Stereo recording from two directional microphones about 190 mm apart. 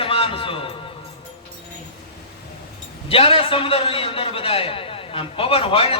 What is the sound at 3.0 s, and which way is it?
A man's voice, 30° left (ahead or behind).